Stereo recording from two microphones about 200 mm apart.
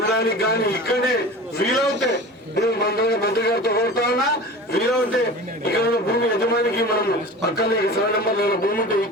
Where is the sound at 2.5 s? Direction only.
50° left (ahead or behind).